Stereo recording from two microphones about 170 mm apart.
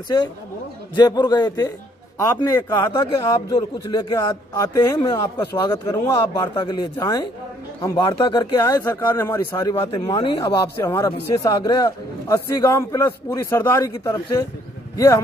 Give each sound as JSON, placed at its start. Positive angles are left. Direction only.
{"t": 0.9, "sound": "a man's voice", "side_deg": 25}
{"t": 6.5, "sound": "a man's voice", "side_deg": 25}
{"t": 9.8, "sound": "a man's voice", "side_deg": 30}